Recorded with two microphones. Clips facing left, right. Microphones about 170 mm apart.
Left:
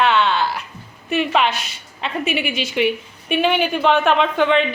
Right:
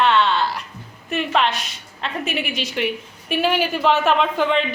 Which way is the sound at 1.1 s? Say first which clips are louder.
Left 2 dB; 5° left (ahead or behind).